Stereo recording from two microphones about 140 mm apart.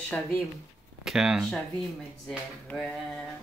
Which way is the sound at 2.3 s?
10° left (ahead or behind).